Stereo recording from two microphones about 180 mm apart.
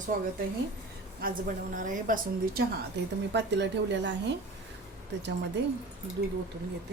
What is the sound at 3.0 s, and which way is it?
A woman's voice, 70° right (ahead or behind).